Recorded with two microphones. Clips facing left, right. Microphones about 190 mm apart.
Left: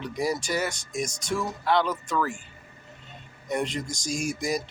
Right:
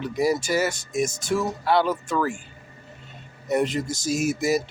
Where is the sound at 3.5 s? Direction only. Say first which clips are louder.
Right 6 dB; 5° right (ahead or behind).